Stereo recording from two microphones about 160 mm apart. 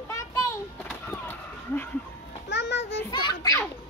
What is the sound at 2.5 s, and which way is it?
Music, 90° left.